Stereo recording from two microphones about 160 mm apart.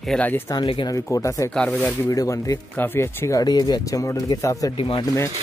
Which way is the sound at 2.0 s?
20° left (ahead or behind).